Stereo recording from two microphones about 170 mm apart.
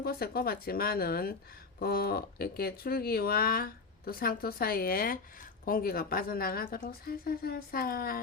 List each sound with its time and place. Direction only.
0.0 s speech: 60° left (ahead or behind)